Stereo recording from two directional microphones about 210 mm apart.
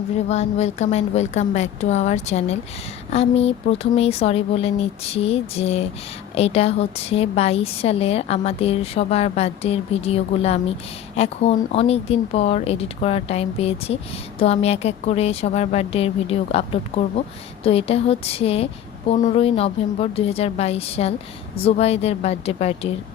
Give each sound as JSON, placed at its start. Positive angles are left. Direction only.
{"t": 0.3, "sound": "a woman's voice", "side_deg": 30}